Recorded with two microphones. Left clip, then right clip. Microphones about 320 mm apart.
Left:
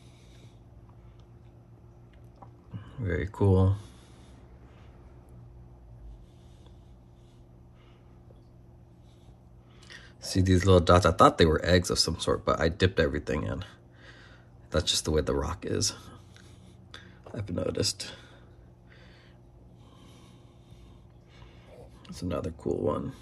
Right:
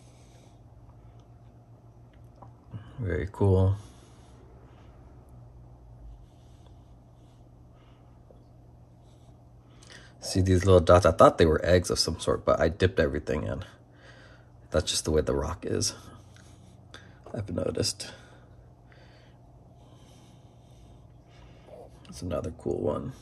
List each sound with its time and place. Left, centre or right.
2.7 s speech: centre
9.8 s speech: centre
16.9 s a sound: centre
22.0 s speech: centre